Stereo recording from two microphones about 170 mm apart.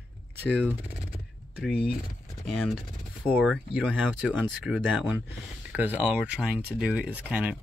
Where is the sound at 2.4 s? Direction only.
5° left (ahead or behind).